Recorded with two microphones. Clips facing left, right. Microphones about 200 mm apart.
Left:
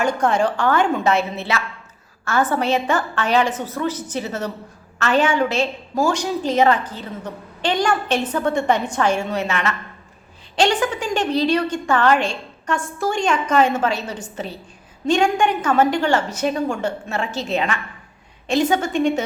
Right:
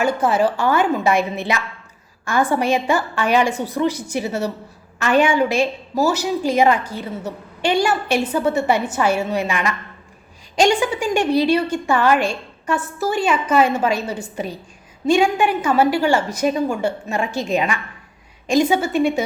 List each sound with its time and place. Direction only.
0.0 s a woman's voice: 5° right (ahead or behind)